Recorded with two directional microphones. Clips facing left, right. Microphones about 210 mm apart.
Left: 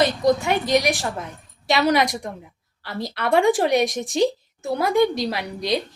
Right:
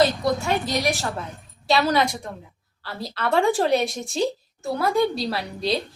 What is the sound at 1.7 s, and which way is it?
A woman's voice, 15° left (ahead or behind).